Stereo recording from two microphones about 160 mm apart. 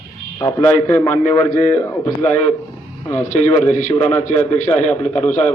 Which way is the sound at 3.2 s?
50° left (ahead or behind).